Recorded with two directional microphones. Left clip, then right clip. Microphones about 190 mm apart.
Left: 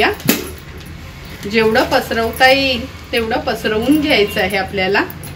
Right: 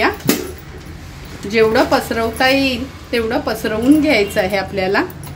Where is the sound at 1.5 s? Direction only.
75° right (ahead or behind).